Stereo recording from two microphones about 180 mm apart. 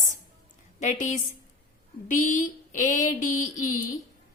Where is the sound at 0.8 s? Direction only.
40° left (ahead or behind).